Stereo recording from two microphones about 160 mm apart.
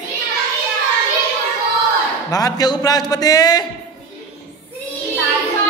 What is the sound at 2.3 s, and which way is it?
A man's voice, 25° left (ahead or behind).